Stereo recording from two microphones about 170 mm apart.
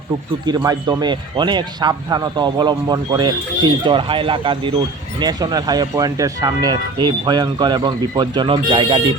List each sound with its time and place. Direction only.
0.4 s speech: 25° right (ahead or behind)